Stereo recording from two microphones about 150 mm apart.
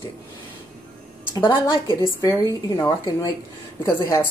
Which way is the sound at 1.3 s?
25° left (ahead or behind).